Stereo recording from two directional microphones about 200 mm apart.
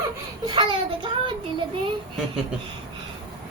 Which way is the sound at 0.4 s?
25° right (ahead or behind).